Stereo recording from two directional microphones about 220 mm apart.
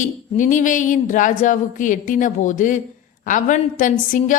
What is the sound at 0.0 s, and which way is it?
A woman's voice, 35° left (ahead or behind).